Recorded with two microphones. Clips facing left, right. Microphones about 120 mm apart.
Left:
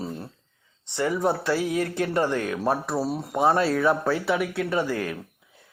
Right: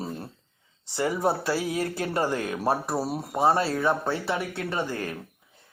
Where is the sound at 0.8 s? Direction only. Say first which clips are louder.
Left 1 dB; 35° right (ahead or behind).